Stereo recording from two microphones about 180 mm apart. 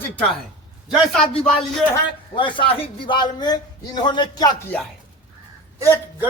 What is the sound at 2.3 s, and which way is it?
A man's voice, 25° left (ahead or behind).